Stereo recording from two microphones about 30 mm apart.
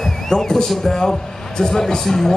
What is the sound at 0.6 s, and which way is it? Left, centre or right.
A man's voice, centre.